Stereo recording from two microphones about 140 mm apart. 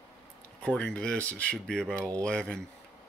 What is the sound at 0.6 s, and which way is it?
Speech, 10° left (ahead or behind).